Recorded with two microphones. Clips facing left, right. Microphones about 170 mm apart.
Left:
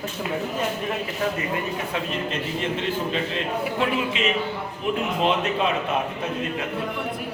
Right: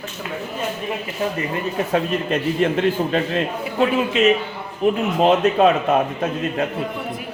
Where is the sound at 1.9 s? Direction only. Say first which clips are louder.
Right 10 dB; 50° right (ahead or behind).